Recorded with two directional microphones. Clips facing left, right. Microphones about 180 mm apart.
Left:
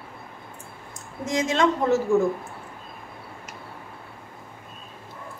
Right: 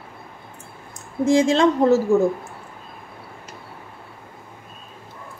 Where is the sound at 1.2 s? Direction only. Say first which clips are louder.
Right 6 dB; 30° right (ahead or behind).